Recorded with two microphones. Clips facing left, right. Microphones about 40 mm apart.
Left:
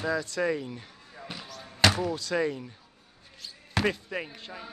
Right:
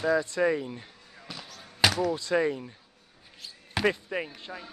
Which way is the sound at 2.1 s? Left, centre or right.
Right.